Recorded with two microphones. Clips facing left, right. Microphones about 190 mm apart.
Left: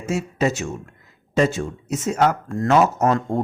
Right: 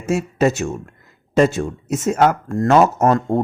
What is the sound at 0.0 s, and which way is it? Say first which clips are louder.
Speech: right 4 dB; 45° right (ahead or behind).